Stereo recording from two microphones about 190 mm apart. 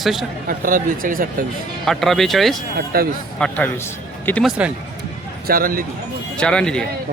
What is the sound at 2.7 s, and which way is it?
Speech, 50° right (ahead or behind).